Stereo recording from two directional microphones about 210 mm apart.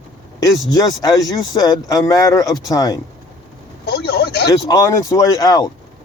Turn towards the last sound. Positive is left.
turn(degrees=20)  # may be behind; listen again after turning